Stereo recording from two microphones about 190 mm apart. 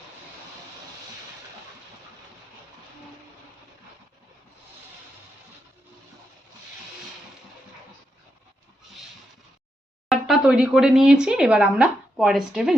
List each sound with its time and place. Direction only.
10.1 s speech: centre (ahead or behind)